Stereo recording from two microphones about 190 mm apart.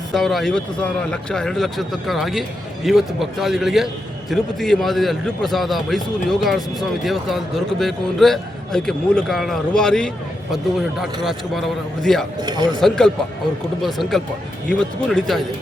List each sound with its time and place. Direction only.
0.1 s a man's voice: centre (ahead or behind)
12.4 s speech: 20° right (ahead or behind)
13.8 s a man's voice: centre (ahead or behind)